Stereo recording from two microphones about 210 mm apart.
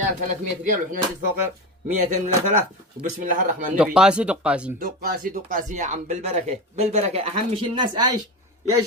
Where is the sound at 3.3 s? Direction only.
40° right (ahead or behind).